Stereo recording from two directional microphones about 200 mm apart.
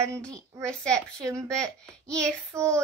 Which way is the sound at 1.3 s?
5° left (ahead or behind).